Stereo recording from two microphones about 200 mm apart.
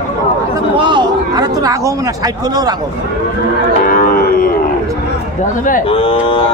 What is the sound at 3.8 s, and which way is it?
Cattle, 45° left (ahead or behind).